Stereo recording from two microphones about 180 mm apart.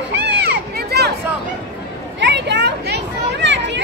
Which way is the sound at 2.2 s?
75° right (ahead or behind).